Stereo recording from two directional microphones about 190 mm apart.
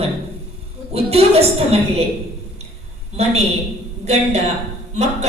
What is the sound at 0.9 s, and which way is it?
Speech, 30° right (ahead or behind).